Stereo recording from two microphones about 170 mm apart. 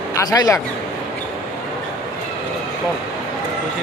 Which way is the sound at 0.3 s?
20° left (ahead or behind).